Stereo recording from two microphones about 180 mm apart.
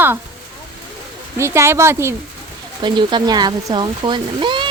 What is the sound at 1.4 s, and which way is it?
Speech, 15° right (ahead or behind).